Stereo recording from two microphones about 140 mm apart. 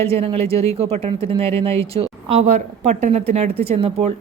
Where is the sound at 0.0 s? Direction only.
45° right (ahead or behind).